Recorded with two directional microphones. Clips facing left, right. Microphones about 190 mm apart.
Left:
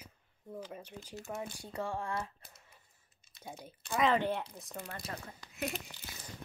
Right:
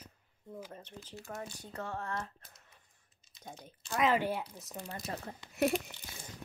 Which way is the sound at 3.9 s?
5° right (ahead or behind).